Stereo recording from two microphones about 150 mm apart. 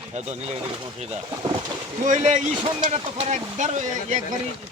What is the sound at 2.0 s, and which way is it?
A man's voice, 55° right (ahead or behind).